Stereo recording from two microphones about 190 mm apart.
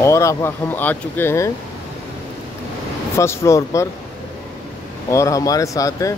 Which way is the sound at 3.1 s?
15° left (ahead or behind).